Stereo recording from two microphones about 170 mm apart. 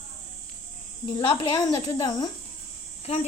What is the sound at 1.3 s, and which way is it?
A woman's voice, 25° left (ahead or behind).